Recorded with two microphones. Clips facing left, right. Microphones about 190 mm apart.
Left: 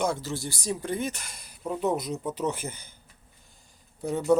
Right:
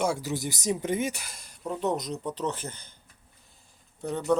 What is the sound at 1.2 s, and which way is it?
Speech, centre (ahead or behind).